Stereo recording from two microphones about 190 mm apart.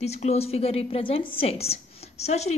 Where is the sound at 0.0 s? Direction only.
35° left (ahead or behind).